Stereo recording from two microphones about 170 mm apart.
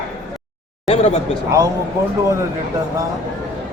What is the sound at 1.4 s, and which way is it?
Speech, 20° right (ahead or behind).